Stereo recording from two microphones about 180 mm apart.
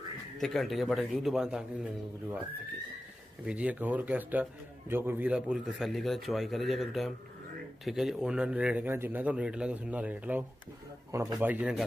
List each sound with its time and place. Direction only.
0.4 s a man's voice: centre (ahead or behind)
3.4 s a man's voice: 5° right (ahead or behind)
11.3 s a man's voice: 5° right (ahead or behind)